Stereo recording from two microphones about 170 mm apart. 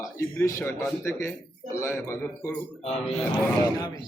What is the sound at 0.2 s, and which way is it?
Speech, 10° left (ahead or behind).